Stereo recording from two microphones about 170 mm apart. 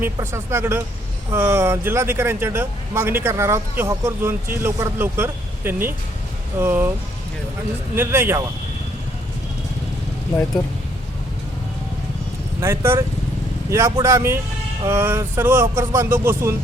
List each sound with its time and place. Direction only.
0.0 s speech: 15° right (ahead or behind)
7.9 s speech: 15° right (ahead or behind)
12.5 s speech: 15° right (ahead or behind)